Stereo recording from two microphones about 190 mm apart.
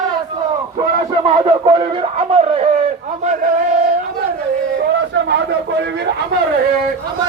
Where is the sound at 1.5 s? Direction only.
25° right (ahead or behind).